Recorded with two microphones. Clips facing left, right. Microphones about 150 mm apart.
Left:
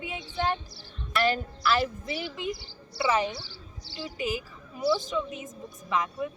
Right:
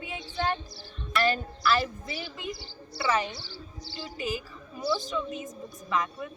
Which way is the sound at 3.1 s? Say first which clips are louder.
Left 2 dB; 15° left (ahead or behind).